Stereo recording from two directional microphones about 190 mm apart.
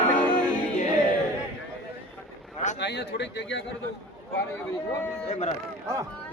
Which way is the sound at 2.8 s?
65° left (ahead or behind).